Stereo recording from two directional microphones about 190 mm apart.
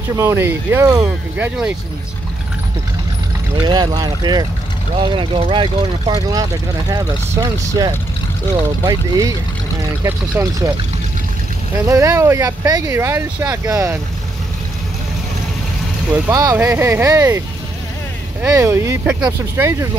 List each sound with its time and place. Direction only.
0.1 s speech: 15° right (ahead or behind)
3.6 s speech: 20° right (ahead or behind)
10.4 s speech: 10° right (ahead or behind)
11.9 s speech: 15° right (ahead or behind)
16.1 s speech: 15° right (ahead or behind)
18.4 s speech: 15° right (ahead or behind)